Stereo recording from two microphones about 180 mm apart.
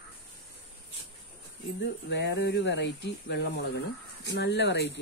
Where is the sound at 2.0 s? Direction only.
75° left (ahead or behind).